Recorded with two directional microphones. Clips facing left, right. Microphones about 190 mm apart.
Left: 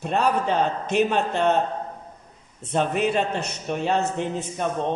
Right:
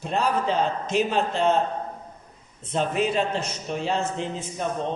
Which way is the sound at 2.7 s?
60° left (ahead or behind).